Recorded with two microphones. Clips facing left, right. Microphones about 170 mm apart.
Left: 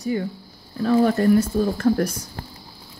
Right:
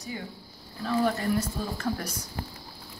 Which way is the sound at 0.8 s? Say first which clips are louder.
Left 9 dB; 50° left (ahead or behind).